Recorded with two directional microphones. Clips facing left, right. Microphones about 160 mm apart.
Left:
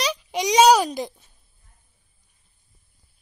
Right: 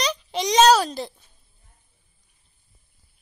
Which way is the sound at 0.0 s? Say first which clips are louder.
Left 1 dB; 10° left (ahead or behind).